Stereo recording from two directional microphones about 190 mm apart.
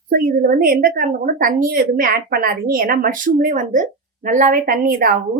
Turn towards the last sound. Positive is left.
turn(degrees=-50)  # may be behind; listen again after turning